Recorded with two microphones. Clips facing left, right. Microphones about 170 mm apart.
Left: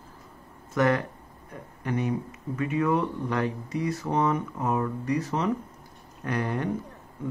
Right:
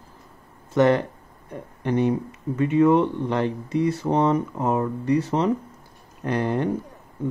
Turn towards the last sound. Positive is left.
turn(degrees=-30)  # may be behind; listen again after turning